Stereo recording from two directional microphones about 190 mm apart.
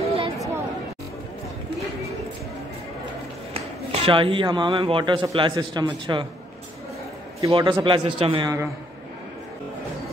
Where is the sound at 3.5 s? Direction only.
25° right (ahead or behind).